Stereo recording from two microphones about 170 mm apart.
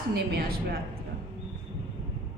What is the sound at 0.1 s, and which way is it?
Speech, 65° right (ahead or behind).